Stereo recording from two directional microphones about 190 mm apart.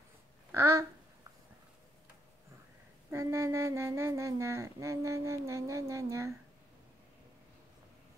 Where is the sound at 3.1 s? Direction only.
15° right (ahead or behind).